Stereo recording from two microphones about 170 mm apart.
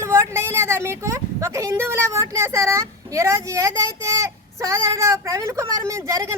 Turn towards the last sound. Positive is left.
turn(degrees=-20)  # may be behind; listen again after turning